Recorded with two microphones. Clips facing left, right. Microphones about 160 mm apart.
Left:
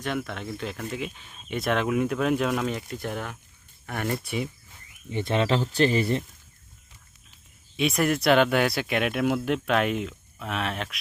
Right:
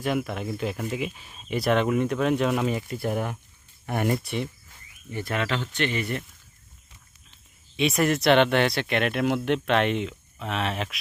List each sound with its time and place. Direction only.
0.0 s speech: 5° right (ahead or behind)
4.2 s speech: centre (ahead or behind)
5.1 s speech: 25° left (ahead or behind)
7.8 s speech: centre (ahead or behind)